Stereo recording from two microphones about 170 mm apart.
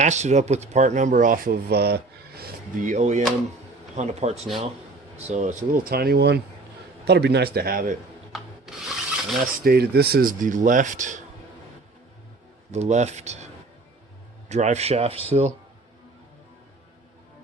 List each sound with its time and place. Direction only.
0.0 s speech: 45° right (ahead or behind)
8.3 s rub: 5° right (ahead or behind)
9.6 s speech: 70° right (ahead or behind); by 11.2 s 45° right (ahead or behind)
12.7 s speech: 40° right (ahead or behind)
14.5 s speech: 40° right (ahead or behind)